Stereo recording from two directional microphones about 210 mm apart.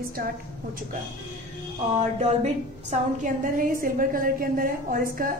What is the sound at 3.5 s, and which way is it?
A woman's voice, 40° right (ahead or behind).